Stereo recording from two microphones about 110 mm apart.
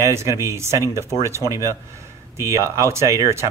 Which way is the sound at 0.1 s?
25° right (ahead or behind).